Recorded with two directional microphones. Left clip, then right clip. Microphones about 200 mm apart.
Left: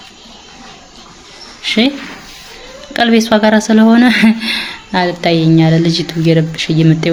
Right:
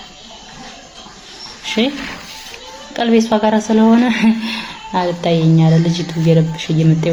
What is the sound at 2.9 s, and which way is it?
A woman's voice, 40° left (ahead or behind).